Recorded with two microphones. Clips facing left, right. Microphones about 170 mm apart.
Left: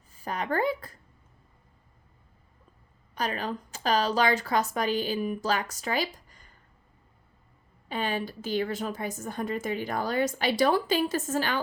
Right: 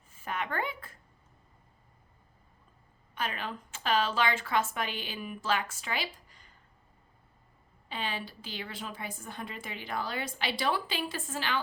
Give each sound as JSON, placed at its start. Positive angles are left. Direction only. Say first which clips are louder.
{"t": 0.1, "sound": "a sound", "louder": "left 5 dB", "side_deg": 35}
{"t": 3.2, "sound": "a woman's voice", "louder": "left 5 dB", "side_deg": 40}
{"t": 7.9, "sound": "a woman's voice", "louder": "left 7 dB", "side_deg": 45}